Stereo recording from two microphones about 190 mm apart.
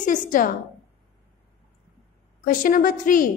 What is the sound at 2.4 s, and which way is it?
Speech, 45° left (ahead or behind).